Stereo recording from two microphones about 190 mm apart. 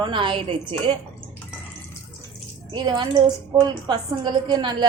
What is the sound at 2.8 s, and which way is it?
Speech, 20° right (ahead or behind).